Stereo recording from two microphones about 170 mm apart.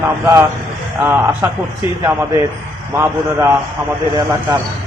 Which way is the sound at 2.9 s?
15° right (ahead or behind).